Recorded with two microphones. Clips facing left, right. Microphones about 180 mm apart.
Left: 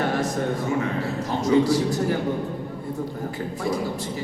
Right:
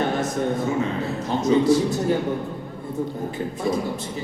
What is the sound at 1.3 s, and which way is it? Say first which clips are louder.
Speech: right 2 dB; 20° right (ahead or behind).